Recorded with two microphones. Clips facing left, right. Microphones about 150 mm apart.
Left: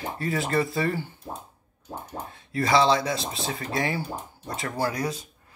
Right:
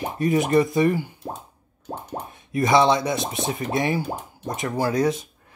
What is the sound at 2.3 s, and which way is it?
Speech, 20° right (ahead or behind).